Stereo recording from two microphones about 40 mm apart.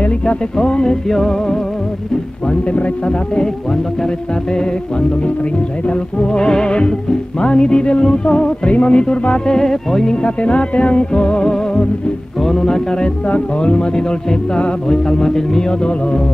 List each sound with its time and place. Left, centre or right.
0.6 s music: left
5.9 s music: left
9.5 s music: centre
10.2 s music: left; by 15.6 s centre